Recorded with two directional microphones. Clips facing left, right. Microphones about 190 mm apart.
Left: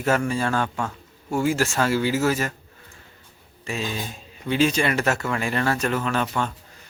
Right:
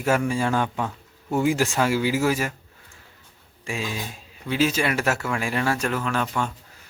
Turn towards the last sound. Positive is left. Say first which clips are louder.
# left 1 dB
turn(degrees=0)  # may be behind; listen again after turning